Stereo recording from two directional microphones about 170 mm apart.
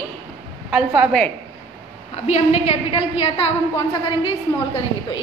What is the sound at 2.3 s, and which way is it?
A woman's voice, 35° left (ahead or behind).